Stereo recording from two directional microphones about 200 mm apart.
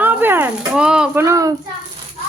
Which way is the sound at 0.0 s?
10° right (ahead or behind).